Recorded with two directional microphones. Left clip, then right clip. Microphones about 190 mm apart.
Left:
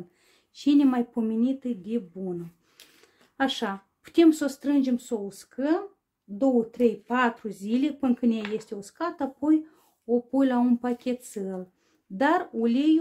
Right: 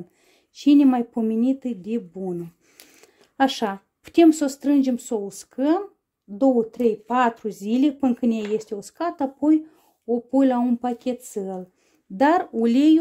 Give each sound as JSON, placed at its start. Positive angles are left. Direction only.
{"t": 0.6, "sound": "speech", "side_deg": -30}
{"t": 3.3, "sound": "speech", "side_deg": -35}
{"t": 10.6, "sound": "speech", "side_deg": -20}